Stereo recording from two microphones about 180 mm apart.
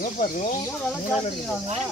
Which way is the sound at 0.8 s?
5° left (ahead or behind).